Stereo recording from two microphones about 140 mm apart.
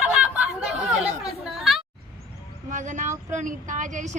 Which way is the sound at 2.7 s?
60° right (ahead or behind).